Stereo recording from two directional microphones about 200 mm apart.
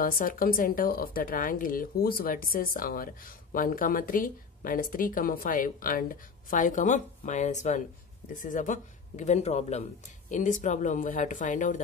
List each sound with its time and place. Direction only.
0.0 s a man's voice: 45° left (ahead or behind)